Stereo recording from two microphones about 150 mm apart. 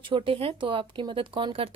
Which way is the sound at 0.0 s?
35° right (ahead or behind).